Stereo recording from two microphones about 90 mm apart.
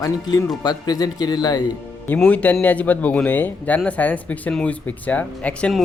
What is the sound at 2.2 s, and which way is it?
Speech, 15° left (ahead or behind).